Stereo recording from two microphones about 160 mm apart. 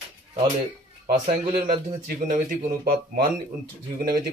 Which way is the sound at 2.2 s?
60° right (ahead or behind).